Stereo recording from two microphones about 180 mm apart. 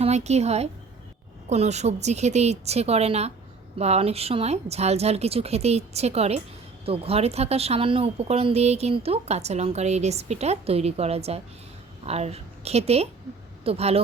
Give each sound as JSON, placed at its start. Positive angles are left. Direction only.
{"t": 0.0, "sound": "a woman's voice", "side_deg": -40}